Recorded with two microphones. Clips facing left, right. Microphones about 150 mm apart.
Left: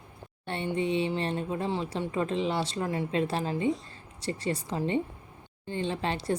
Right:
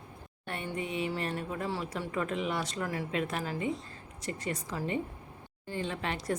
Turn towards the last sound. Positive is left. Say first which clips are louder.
# left 4 dB
turn(degrees=30)  # may be behind; listen again after turning